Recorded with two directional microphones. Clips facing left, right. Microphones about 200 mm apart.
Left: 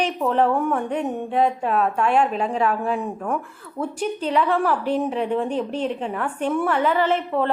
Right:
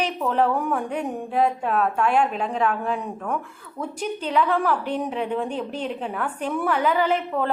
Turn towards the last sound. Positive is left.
turn(degrees=-5)  # may be behind; listen again after turning